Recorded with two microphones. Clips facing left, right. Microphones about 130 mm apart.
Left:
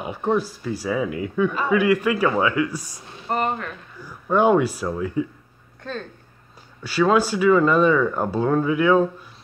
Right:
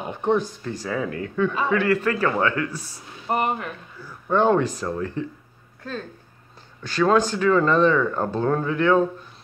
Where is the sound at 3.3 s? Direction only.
15° right (ahead or behind).